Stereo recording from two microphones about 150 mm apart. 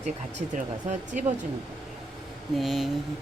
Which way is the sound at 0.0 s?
50° right (ahead or behind).